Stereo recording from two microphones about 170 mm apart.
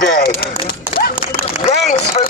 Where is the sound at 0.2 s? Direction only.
60° left (ahead or behind).